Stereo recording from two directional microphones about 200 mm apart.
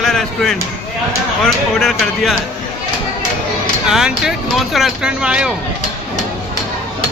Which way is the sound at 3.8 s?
5° right (ahead or behind).